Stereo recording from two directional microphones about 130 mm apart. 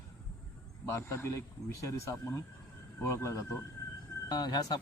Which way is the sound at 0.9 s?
20° left (ahead or behind).